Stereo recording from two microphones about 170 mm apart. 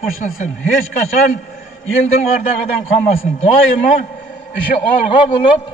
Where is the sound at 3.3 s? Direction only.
50° left (ahead or behind).